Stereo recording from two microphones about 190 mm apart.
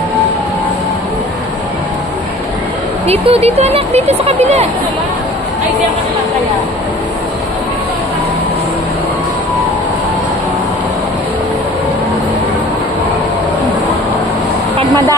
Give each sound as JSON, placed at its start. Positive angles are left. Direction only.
{"t": 3.1, "sound": "speech", "side_deg": -30}
{"t": 14.8, "sound": "speech", "side_deg": -20}